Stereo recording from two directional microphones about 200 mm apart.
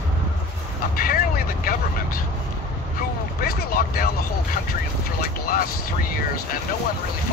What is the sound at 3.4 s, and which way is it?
Speech, 50° left (ahead or behind).